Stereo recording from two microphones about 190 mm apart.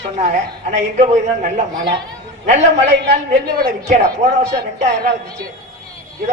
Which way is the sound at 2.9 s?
65° right (ahead or behind).